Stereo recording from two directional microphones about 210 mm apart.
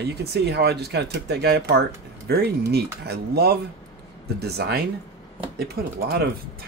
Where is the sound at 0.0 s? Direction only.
50° right (ahead or behind).